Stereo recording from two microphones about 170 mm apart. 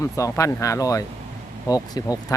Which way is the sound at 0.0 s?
20° left (ahead or behind).